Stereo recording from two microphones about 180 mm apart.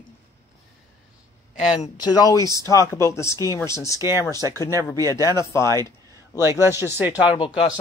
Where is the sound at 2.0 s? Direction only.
20° left (ahead or behind).